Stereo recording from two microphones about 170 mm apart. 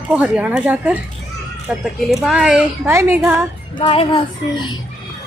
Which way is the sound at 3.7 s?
30° left (ahead or behind).